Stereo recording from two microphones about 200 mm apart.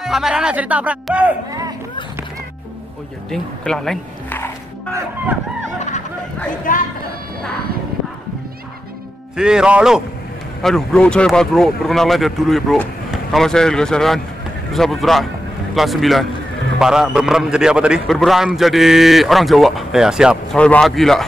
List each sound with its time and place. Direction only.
0.0 s speech: centre (ahead or behind)
1.5 s speech: 15° right (ahead or behind)
3.3 s speech: 5° left (ahead or behind)
5.8 s a sound: 35° left (ahead or behind)
6.7 s speech: 40° left (ahead or behind)
9.4 s speech: 5° right (ahead or behind)